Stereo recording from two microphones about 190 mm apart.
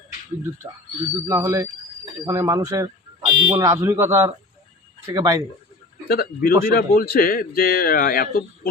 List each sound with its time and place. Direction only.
1.3 s speech: 15° right (ahead or behind)
6.1 s a man's voice: 50° left (ahead or behind)